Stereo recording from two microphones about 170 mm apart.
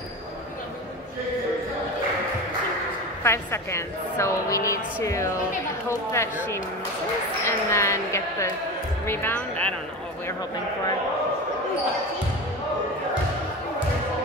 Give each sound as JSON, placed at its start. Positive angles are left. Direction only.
{"t": 3.3, "sound": "a woman's voice", "side_deg": 15}